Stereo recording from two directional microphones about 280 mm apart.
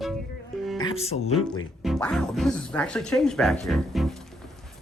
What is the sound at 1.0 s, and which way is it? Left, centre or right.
Speech, left.